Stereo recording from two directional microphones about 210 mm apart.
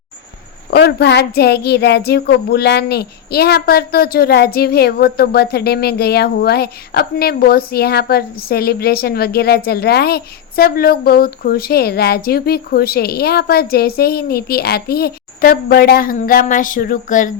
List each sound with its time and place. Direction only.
0.7 s a woman's voice: 50° left (ahead or behind)